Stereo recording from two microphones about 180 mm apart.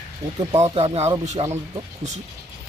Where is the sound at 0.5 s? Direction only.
35° right (ahead or behind).